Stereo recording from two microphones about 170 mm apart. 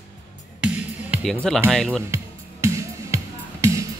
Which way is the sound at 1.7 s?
5° left (ahead or behind).